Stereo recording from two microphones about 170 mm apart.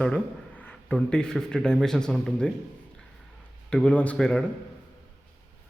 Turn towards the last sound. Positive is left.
turn(degrees=5)  # may be behind; listen again after turning